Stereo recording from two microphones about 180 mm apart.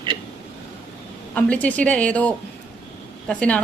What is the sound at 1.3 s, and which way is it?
A woman's voice, 10° left (ahead or behind).